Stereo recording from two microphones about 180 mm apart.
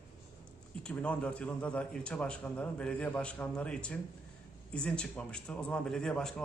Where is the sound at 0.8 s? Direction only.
5° left (ahead or behind).